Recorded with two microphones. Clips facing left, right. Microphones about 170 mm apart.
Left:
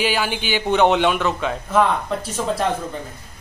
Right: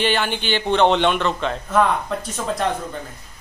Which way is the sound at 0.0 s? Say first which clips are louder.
Right 1 dB; 5° left (ahead or behind).